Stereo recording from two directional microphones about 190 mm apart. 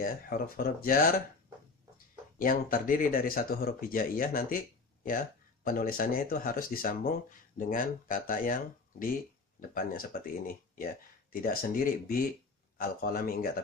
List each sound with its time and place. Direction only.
0.0 s speech: 50° left (ahead or behind)
2.3 s speech: 50° left (ahead or behind)
9.8 s speech: 50° left (ahead or behind)